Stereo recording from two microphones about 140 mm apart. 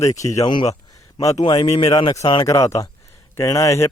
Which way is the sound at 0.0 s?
25° left (ahead or behind).